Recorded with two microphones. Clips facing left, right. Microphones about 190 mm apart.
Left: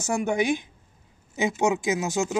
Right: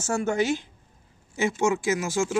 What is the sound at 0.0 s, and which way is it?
Speech, 15° left (ahead or behind).